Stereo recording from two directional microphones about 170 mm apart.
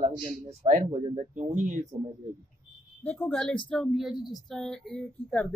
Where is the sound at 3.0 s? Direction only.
10° left (ahead or behind).